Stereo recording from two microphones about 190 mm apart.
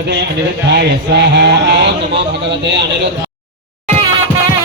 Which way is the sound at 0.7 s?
65° right (ahead or behind).